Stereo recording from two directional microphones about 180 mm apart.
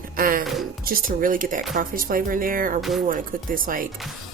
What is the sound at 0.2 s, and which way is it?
Music, 50° right (ahead or behind).